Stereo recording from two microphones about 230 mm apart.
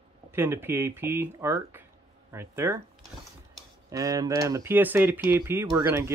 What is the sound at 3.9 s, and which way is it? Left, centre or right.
Speech, centre.